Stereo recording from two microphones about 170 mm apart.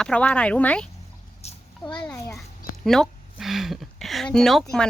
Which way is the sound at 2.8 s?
Centre (ahead or behind).